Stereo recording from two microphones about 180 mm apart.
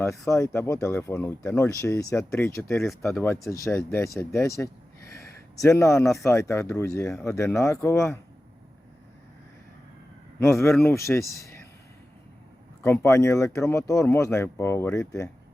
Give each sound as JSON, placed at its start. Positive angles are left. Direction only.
{"t": 0.0, "sound": "speech", "side_deg": 15}
{"t": 3.2, "sound": "speech", "side_deg": 15}
{"t": 10.4, "sound": "speech", "side_deg": 15}
{"t": 12.8, "sound": "speech", "side_deg": 15}